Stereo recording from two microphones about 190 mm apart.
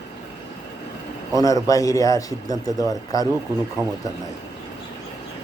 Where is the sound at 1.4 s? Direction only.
20° left (ahead or behind).